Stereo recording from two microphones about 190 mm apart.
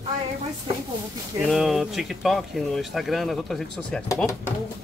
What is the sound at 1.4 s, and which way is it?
Speech, centre (ahead or behind).